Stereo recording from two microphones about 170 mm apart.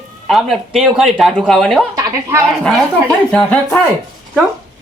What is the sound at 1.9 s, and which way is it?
Speech, 20° right (ahead or behind).